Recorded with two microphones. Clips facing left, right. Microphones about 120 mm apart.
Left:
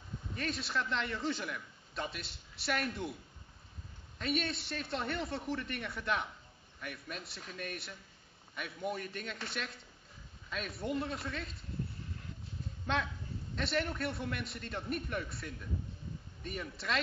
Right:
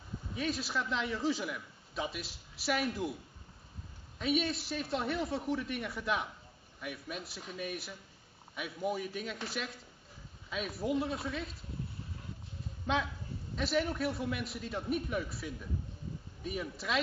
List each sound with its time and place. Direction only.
0.3 s a man's voice: centre (ahead or behind)
4.2 s a man's voice: centre (ahead or behind)
12.8 s a man's voice: 5° right (ahead or behind)